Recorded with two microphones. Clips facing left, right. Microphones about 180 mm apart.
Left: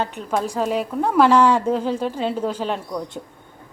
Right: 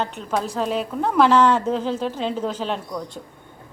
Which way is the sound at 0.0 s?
10° left (ahead or behind).